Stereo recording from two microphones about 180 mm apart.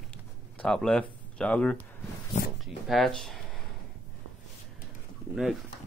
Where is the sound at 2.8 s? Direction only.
Centre (ahead or behind).